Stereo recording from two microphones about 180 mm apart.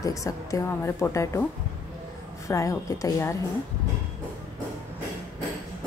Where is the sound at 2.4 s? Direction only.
15° left (ahead or behind).